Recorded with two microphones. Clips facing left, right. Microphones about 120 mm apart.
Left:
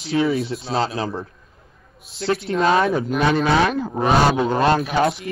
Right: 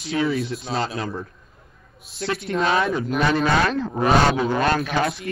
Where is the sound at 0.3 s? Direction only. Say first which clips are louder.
Left 2 dB; centre (ahead or behind).